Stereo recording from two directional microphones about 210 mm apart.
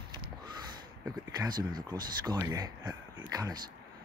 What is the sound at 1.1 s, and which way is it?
Speech, 20° right (ahead or behind).